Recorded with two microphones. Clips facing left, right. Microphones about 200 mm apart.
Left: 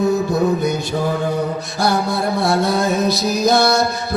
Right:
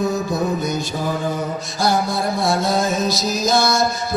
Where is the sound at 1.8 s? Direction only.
60° left (ahead or behind).